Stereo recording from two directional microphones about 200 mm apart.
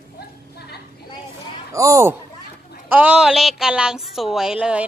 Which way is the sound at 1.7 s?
15° right (ahead or behind).